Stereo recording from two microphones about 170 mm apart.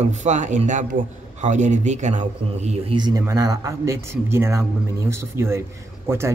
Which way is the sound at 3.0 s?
20° right (ahead or behind).